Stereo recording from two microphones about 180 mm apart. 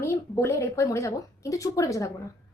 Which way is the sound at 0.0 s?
15° left (ahead or behind).